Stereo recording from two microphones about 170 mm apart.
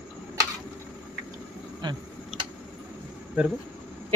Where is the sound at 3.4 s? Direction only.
10° right (ahead or behind).